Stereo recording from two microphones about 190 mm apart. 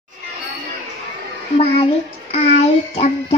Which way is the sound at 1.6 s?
30° left (ahead or behind).